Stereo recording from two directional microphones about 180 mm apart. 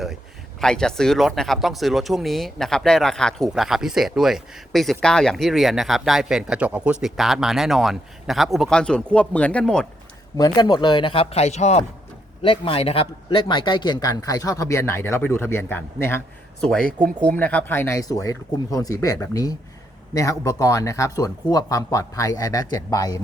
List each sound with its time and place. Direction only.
0.6 s speech: 5° left (ahead or behind)
10.3 s speech: 20° left (ahead or behind)